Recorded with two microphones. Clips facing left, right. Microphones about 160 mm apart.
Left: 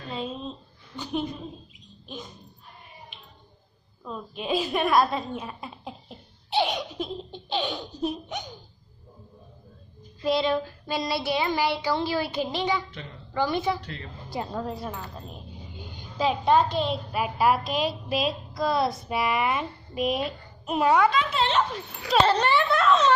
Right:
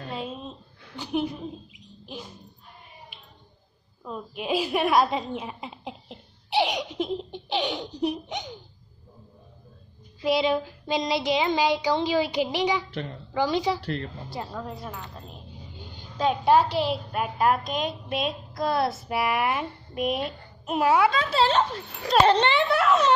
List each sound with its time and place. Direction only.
0.9 s speech: 10° right (ahead or behind)
4.0 s a woman's voice: 10° right (ahead or behind)
10.2 s speech: 15° right (ahead or behind)
13.8 s a woman's voice: 55° right (ahead or behind)
14.3 s a woman's voice: 15° left (ahead or behind)
14.6 s a woman's voice: 30° left (ahead or behind)
16.4 s speech: 10° right (ahead or behind)
17.1 s a woman's voice: 5° left (ahead or behind)
21.1 s speech: 35° right (ahead or behind)
22.2 s speech: 20° right (ahead or behind)